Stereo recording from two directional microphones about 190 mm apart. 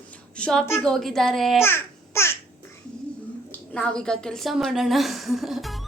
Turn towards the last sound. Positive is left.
turn(degrees=0)  # may be behind; listen again after turning